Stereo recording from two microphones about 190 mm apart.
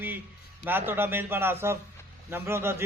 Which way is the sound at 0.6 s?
10° right (ahead or behind).